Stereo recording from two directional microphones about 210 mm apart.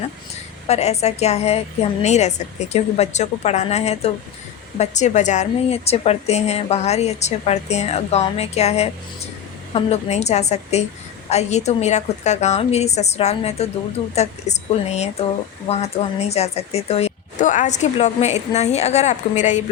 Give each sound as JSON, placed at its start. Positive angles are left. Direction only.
{"t": 0.7, "sound": "a woman's voice", "side_deg": 30}